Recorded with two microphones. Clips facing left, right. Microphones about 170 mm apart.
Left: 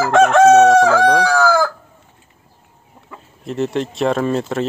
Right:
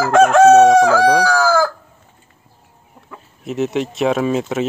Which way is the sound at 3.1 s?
Centre (ahead or behind).